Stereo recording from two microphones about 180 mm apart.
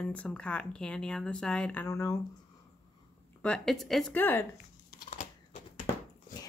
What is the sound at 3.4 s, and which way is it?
A woman's voice, 5° left (ahead or behind).